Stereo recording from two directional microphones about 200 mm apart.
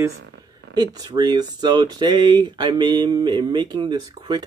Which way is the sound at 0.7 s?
20° right (ahead or behind).